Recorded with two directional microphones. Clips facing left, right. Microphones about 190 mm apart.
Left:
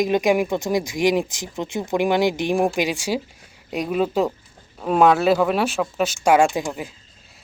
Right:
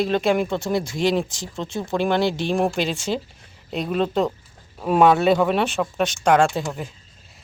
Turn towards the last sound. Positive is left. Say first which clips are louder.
# left 1 dB
turn(degrees=10)  # may be behind; listen again after turning